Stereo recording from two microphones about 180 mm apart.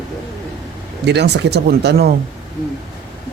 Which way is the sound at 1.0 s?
70° right (ahead or behind).